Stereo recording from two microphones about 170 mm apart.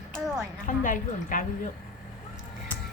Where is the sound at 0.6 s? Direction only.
50° left (ahead or behind).